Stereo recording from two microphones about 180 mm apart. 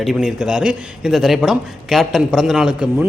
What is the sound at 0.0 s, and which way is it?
Speech, centre (ahead or behind).